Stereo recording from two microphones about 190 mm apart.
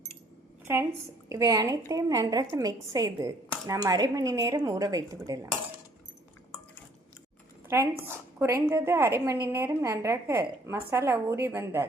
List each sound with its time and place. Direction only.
0.6 s a woman's voice: 10° right (ahead or behind)
7.7 s a woman's voice: 10° right (ahead or behind)